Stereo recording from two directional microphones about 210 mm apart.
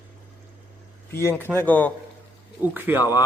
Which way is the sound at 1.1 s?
10° left (ahead or behind).